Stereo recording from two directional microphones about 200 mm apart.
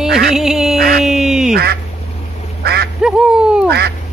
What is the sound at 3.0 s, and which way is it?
Duck, 5° right (ahead or behind).